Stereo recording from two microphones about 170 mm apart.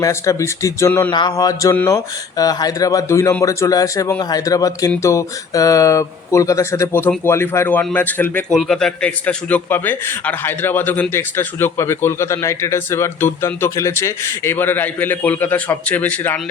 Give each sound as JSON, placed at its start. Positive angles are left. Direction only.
{"t": 0.0, "sound": "a man's voice", "side_deg": 20}
{"t": 1.1, "sound": "a man's voice", "side_deg": 25}